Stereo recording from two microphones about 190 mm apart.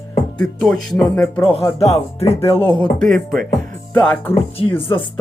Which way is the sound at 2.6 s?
10° left (ahead or behind).